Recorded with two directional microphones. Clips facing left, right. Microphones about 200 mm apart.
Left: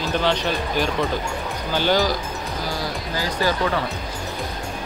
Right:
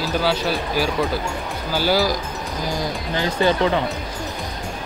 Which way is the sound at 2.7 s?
20° right (ahead or behind).